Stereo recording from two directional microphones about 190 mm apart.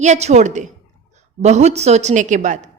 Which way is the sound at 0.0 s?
35° right (ahead or behind).